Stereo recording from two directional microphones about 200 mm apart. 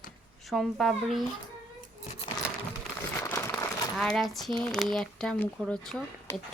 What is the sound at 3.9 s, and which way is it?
Speech, centre (ahead or behind).